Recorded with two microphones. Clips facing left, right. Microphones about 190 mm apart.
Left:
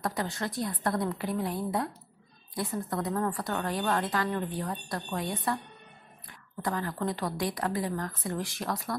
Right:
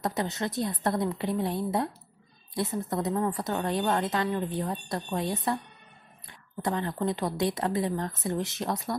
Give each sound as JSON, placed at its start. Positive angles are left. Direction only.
{"t": 0.0, "sound": "speech", "side_deg": -20}
{"t": 6.6, "sound": "speech", "side_deg": -25}